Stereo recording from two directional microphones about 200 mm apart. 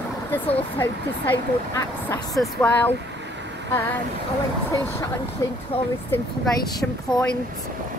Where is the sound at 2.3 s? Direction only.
5° left (ahead or behind).